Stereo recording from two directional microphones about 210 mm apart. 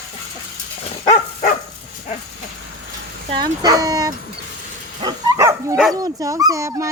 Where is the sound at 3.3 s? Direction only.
20° right (ahead or behind).